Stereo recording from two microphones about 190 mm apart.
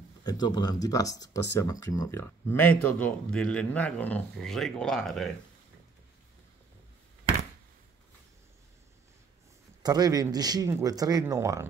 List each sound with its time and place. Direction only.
0.2 s speech: 20° left (ahead or behind); by 5.3 s centre (ahead or behind)
9.8 s speech: 20° right (ahead or behind)